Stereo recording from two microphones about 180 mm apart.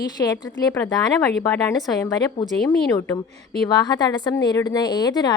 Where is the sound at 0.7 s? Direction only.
10° left (ahead or behind).